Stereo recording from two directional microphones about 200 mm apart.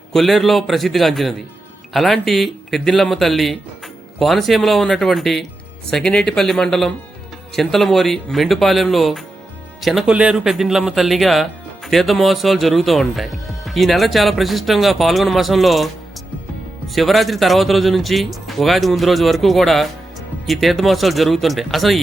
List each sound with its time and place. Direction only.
0.1 s speech: centre (ahead or behind)
16.9 s speech: centre (ahead or behind)